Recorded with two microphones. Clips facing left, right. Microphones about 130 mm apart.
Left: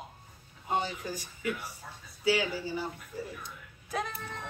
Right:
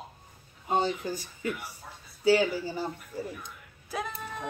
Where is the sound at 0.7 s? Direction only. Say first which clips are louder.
Right 4 dB; 30° right (ahead or behind).